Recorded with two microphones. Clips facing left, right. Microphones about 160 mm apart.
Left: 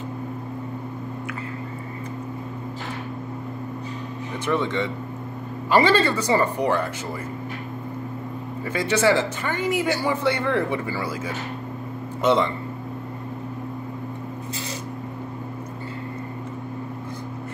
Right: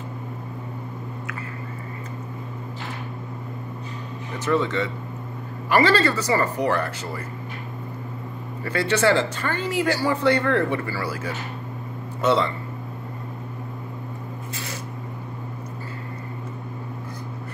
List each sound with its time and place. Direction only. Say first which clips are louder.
4.5 s speech: right 1 dB; 15° left (ahead or behind)
6.2 s speech: left 1 dB; 25° left (ahead or behind)
8.7 s speech: even; 10° left (ahead or behind)